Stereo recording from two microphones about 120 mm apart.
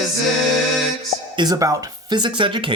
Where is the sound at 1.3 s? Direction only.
35° right (ahead or behind).